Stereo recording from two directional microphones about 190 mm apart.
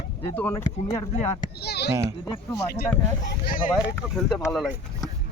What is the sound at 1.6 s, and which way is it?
Speech, 60° left (ahead or behind).